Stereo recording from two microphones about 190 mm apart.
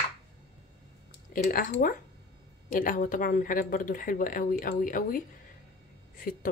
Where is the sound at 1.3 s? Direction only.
45° left (ahead or behind).